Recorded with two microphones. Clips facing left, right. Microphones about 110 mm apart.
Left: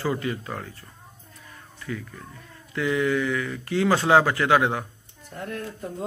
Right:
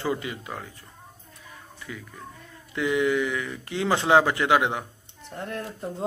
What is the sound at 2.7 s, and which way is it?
Speech, 20° right (ahead or behind).